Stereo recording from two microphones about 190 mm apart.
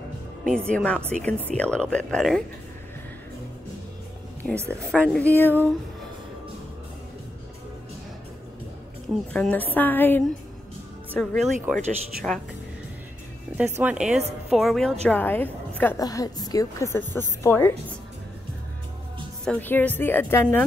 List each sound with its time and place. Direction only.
0.4 s speech: 5° left (ahead or behind)
4.4 s speech: 5° left (ahead or behind)
9.3 s a woman's voice: 5° left (ahead or behind)
13.6 s speech: 10° right (ahead or behind)
15.0 s a woman's voice: 10° left (ahead or behind)
19.4 s a woman's voice: 10° left (ahead or behind)